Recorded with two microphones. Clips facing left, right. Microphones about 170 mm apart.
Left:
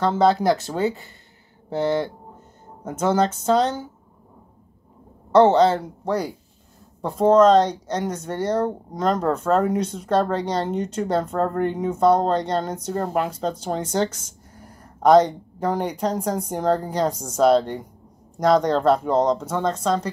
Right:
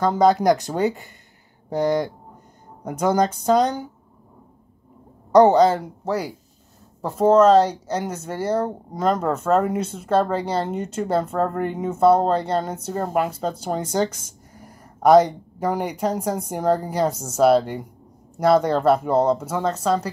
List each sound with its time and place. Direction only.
0.0 s speech: 15° right (ahead or behind)
5.3 s speech: 10° right (ahead or behind)